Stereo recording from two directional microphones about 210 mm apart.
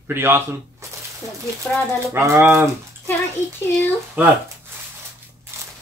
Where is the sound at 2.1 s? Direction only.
10° right (ahead or behind).